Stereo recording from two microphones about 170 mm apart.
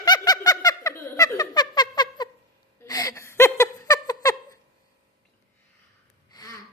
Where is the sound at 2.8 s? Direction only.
20° left (ahead or behind).